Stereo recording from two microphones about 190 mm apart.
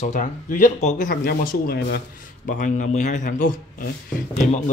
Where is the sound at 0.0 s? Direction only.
45° left (ahead or behind).